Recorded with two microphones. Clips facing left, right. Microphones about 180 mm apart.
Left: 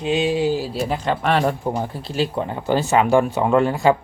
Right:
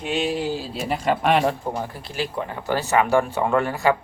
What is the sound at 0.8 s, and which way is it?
Speech, 10° right (ahead or behind).